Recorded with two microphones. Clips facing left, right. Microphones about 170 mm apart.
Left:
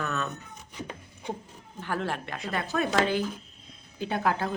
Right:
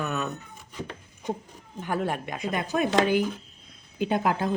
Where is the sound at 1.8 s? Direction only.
15° right (ahead or behind).